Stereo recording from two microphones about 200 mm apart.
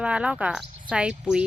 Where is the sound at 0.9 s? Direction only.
5° right (ahead or behind).